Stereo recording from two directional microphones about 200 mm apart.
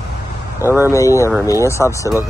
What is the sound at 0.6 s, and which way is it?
Speech, 10° right (ahead or behind).